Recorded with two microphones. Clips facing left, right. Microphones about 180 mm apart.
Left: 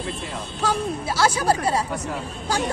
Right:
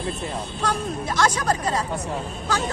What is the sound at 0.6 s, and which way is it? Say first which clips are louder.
Speech: left 3 dB; 5° left (ahead or behind).